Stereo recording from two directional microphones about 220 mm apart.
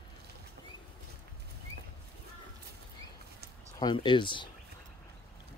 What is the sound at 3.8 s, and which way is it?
Speech, 20° left (ahead or behind).